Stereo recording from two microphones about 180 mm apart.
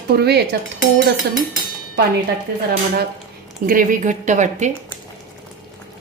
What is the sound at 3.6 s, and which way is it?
Speech, 50° right (ahead or behind).